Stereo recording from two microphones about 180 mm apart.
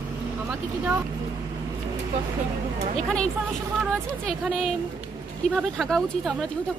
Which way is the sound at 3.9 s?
Centre (ahead or behind).